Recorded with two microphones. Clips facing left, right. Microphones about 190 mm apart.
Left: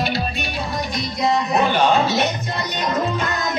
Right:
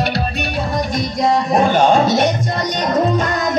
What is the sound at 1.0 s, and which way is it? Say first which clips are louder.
Music: right 3 dB; 50° right (ahead or behind).